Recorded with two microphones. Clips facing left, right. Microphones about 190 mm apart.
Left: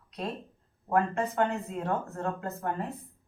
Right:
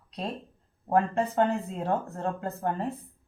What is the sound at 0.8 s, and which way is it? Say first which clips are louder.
Speech: right 2 dB; 30° right (ahead or behind).